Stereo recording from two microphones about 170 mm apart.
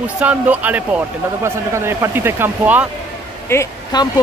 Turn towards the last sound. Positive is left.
turn(degrees=20)  # may be behind; listen again after turning